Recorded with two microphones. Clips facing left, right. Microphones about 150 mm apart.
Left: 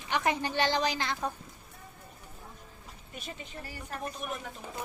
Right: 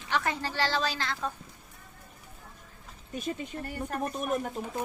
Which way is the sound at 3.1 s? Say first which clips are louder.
Right 9 dB; 50° right (ahead or behind).